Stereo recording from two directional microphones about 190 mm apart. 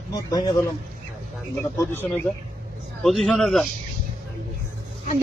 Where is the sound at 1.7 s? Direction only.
15° left (ahead or behind).